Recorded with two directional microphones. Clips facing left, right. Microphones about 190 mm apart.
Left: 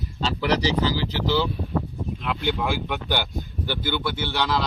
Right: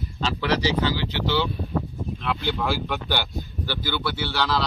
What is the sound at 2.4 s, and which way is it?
Speech, 15° left (ahead or behind).